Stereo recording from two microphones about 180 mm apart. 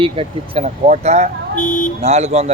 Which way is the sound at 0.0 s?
30° right (ahead or behind).